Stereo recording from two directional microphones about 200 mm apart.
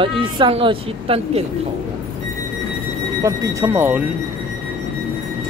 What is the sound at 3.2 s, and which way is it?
Speech, 15° right (ahead or behind).